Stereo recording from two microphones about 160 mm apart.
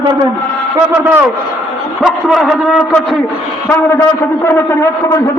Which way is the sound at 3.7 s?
15° left (ahead or behind).